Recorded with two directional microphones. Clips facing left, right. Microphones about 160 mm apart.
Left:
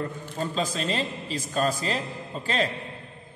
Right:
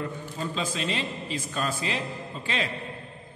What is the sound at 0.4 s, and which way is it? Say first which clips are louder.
A man's voice: left 3 dB; 40° left (ahead or behind).